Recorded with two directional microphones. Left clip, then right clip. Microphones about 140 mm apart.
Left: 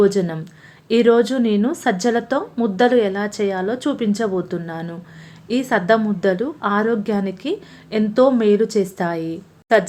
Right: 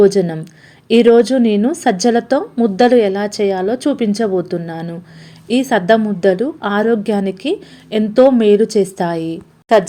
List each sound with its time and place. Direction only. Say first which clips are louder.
0.0 s a woman's voice: right 5 dB; 20° right (ahead or behind)